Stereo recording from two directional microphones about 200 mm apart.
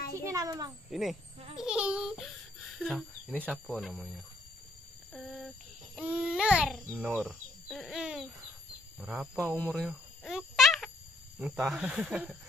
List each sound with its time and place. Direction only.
0.1 s a child's voice: 15° right (ahead or behind)
0.9 s a child's voice: centre (ahead or behind)
5.1 s a sound: centre (ahead or behind)
5.9 s a child's voice: 5° right (ahead or behind)
9.8 s a sound: centre (ahead or behind)
11.3 s speech: 5° right (ahead or behind)